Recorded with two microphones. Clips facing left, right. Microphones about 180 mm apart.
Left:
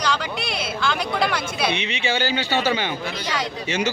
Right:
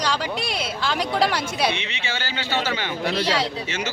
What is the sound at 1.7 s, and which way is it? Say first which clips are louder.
Speech: left 4 dB; 15° left (ahead or behind).